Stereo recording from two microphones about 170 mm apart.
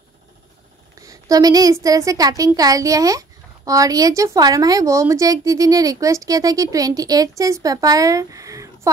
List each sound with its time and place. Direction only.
0.9 s a woman's voice: 20° right (ahead or behind)